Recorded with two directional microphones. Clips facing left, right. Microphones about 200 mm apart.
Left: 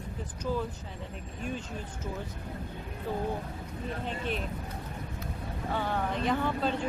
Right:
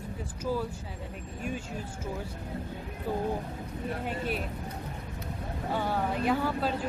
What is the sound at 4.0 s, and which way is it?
Speech, 5° right (ahead or behind).